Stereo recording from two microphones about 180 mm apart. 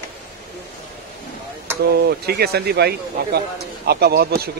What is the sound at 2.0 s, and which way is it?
Speech, 60° right (ahead or behind).